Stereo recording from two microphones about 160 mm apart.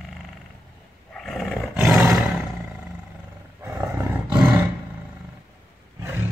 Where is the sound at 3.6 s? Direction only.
15° right (ahead or behind).